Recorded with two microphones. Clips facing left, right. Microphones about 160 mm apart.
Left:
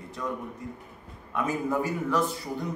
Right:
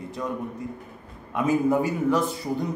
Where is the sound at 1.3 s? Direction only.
20° right (ahead or behind).